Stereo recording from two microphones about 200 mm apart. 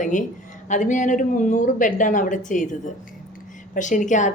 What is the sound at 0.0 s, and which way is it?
Speech, 40° left (ahead or behind).